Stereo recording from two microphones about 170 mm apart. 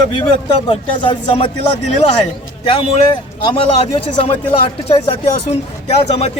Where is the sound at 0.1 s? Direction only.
25° left (ahead or behind).